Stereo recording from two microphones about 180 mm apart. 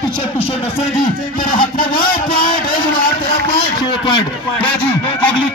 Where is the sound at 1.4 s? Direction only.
50° left (ahead or behind).